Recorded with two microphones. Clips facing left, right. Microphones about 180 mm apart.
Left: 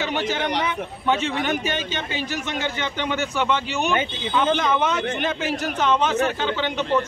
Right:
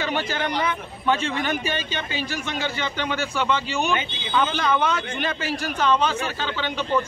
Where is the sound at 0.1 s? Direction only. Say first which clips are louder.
Left 2 dB; 20° left (ahead or behind).